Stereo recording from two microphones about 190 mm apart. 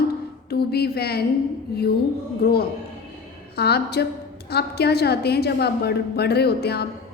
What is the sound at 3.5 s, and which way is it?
A woman's voice, 60° left (ahead or behind).